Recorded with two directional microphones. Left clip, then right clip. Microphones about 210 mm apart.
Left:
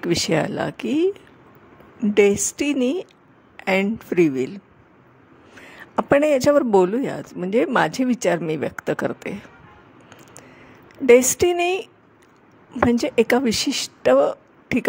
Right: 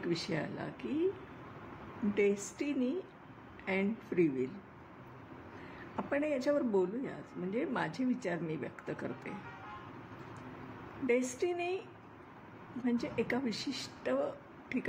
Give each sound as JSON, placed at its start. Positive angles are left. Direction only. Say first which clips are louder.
{"t": 0.0, "sound": "speech", "louder": "left 16 dB", "side_deg": 50}
{"t": 2.1, "sound": "speech", "louder": "left 15 dB", "side_deg": 50}
{"t": 5.9, "sound": "speech", "louder": "left 18 dB", "side_deg": 50}
{"t": 11.1, "sound": "speech", "louder": "left 19 dB", "side_deg": 55}
{"t": 12.9, "sound": "speech", "louder": "left 16 dB", "side_deg": 50}